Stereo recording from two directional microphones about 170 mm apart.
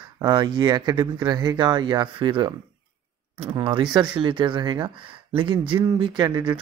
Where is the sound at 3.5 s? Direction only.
30° right (ahead or behind).